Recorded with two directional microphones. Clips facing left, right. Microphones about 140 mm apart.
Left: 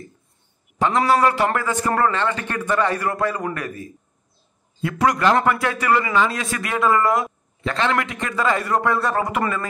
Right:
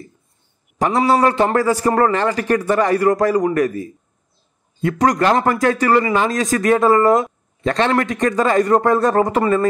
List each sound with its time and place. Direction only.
0.7 s a man's voice: 35° right (ahead or behind)